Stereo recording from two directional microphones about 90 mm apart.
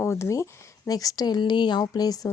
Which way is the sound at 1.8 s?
45° left (ahead or behind).